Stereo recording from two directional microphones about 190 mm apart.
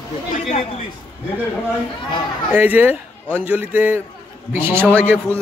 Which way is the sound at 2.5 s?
10° right (ahead or behind).